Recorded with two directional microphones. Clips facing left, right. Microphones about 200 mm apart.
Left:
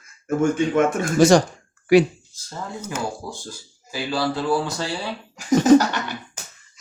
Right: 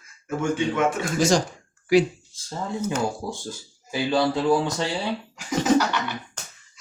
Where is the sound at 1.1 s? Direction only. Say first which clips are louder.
Left 9 dB; 65° left (ahead or behind).